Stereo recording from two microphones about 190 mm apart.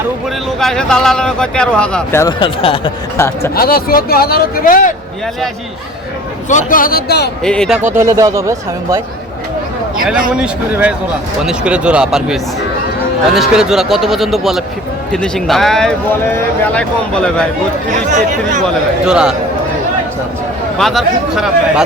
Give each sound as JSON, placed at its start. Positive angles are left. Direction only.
{"t": 0.6, "sound": "speech", "side_deg": 5}
{"t": 2.2, "sound": "speech", "side_deg": 25}
{"t": 3.2, "sound": "speech", "side_deg": 15}
{"t": 3.5, "sound": "speech", "side_deg": 50}
{"t": 6.5, "sound": "speech", "side_deg": 45}
{"t": 7.4, "sound": "speech", "side_deg": 5}
{"t": 7.9, "sound": "speech", "side_deg": -15}
{"t": 10.0, "sound": "speech", "side_deg": -5}
{"t": 17.9, "sound": "speech", "side_deg": -40}
{"t": 19.0, "sound": "speech", "side_deg": -5}
{"t": 20.7, "sound": "speech", "side_deg": 0}